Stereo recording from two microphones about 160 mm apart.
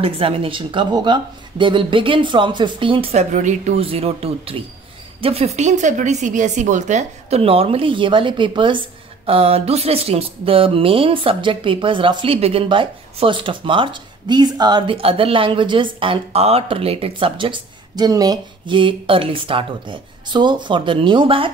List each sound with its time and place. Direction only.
0.0 s a woman's voice: 35° right (ahead or behind)